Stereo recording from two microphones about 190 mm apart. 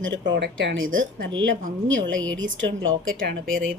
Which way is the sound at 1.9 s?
90° right.